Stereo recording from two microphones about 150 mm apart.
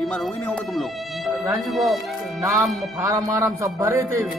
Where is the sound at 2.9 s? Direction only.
25° right (ahead or behind).